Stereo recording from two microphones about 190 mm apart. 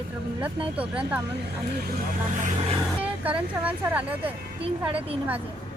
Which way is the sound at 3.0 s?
5° right (ahead or behind).